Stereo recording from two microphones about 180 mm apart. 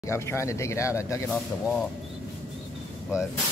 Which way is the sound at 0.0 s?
15° left (ahead or behind).